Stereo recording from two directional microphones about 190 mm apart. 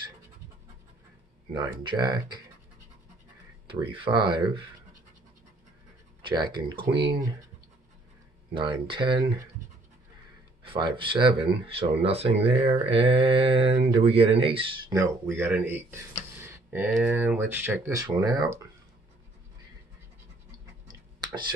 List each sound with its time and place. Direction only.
1.5 s speech: 25° right (ahead or behind)
3.6 s speech: 25° right (ahead or behind)
6.2 s speech: 25° right (ahead or behind)
8.5 s speech: 25° right (ahead or behind)
10.6 s speech: 25° right (ahead or behind)
14.9 s speech: 15° right (ahead or behind)
16.3 s tick: 10° right (ahead or behind)
16.9 s speech: 5° right (ahead or behind)